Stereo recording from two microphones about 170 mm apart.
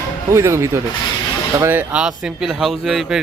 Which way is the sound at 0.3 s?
15° right (ahead or behind).